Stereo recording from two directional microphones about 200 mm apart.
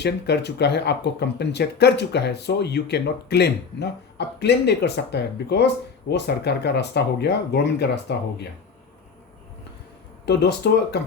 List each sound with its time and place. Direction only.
0.0 s speech: 55° left (ahead or behind)
10.2 s speech: 55° left (ahead or behind)